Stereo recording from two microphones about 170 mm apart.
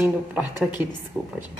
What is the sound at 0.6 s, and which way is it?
Speech, 25° left (ahead or behind).